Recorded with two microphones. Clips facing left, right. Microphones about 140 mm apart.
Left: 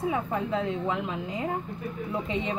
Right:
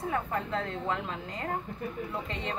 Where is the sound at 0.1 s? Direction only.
10° left (ahead or behind).